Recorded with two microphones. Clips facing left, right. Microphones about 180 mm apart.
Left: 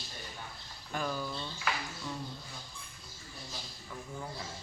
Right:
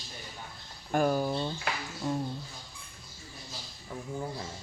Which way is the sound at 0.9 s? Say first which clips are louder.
Right 9 dB; 50° right (ahead or behind).